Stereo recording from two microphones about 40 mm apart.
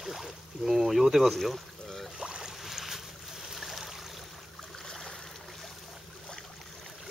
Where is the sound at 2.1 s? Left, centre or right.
Right.